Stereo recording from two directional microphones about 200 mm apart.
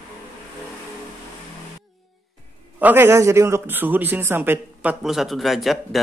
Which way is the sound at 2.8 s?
10° right (ahead or behind).